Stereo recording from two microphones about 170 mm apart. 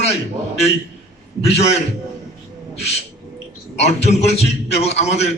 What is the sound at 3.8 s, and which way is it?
A man's voice, 40° left (ahead or behind).